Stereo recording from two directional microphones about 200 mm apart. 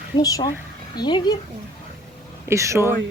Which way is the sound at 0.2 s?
20° left (ahead or behind).